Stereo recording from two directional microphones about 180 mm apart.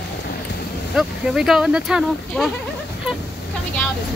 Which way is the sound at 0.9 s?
Centre (ahead or behind).